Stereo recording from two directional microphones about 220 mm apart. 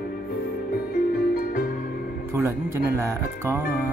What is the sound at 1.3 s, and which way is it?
Music, 40° left (ahead or behind).